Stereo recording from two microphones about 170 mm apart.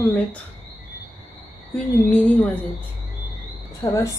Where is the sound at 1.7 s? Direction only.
10° left (ahead or behind).